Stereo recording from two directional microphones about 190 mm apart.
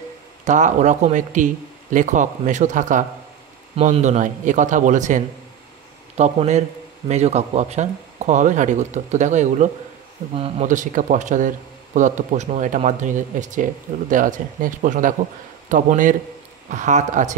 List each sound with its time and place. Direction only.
0.5 s a man's voice: 40° right (ahead or behind)